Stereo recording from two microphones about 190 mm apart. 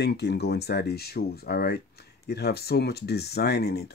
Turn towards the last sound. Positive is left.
turn(degrees=60)  # may be behind; listen again after turning